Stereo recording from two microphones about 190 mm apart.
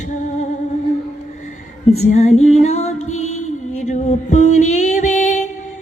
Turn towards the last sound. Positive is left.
turn(degrees=40)  # may be behind; listen again after turning